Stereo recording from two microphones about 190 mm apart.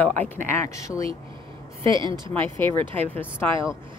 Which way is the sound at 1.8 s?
25° right (ahead or behind).